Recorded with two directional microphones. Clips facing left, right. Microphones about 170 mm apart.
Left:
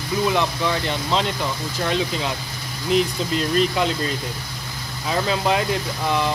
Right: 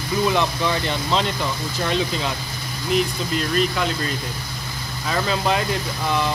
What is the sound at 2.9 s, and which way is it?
Speech, 30° left (ahead or behind).